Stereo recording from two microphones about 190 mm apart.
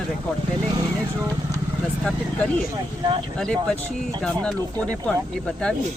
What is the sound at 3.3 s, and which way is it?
Speech, 5° left (ahead or behind).